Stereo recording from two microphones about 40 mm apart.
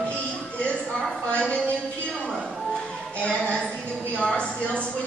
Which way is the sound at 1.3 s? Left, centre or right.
Left.